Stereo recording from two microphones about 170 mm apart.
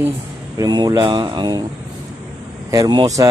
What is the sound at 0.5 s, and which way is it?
Speech, 25° right (ahead or behind).